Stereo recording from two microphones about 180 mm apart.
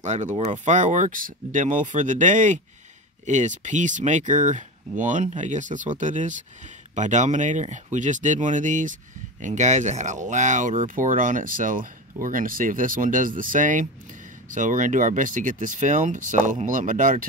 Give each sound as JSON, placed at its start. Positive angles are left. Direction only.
{"t": 0.0, "sound": "speech", "side_deg": -40}